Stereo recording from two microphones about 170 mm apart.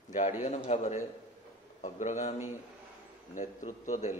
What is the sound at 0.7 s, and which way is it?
A man's voice, 45° left (ahead or behind).